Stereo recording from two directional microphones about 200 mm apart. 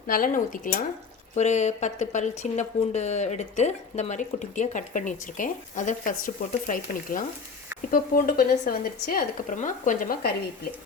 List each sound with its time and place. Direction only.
0.1 s a woman's voice: 45° left (ahead or behind)